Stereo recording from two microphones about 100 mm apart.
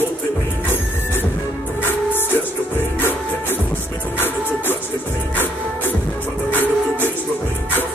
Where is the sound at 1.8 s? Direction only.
20° left (ahead or behind).